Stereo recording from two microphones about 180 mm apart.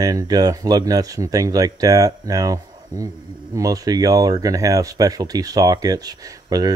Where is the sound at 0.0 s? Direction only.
20° right (ahead or behind).